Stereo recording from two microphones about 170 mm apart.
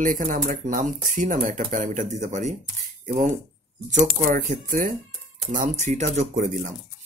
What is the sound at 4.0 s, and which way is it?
Speech, 55° right (ahead or behind).